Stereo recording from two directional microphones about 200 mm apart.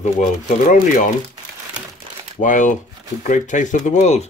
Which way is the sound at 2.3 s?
40° left (ahead or behind).